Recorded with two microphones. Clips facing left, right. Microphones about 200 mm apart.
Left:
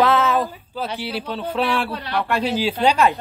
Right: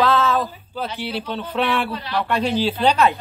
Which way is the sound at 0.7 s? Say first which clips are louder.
Even; 5° left (ahead or behind).